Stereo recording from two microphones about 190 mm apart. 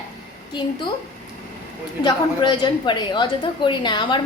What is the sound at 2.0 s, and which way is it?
A woman's voice, 25° left (ahead or behind).